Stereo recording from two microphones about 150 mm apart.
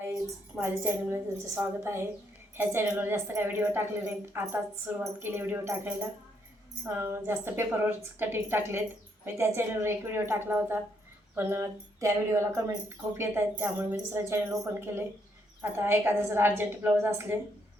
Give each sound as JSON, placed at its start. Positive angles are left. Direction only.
{"t": 0.5, "sound": "a woman's voice", "side_deg": -15}